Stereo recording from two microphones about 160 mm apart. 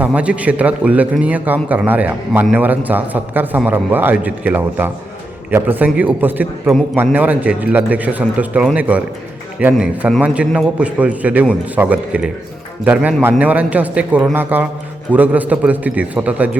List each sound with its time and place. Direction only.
0.0 s a man's voice: 10° right (ahead or behind)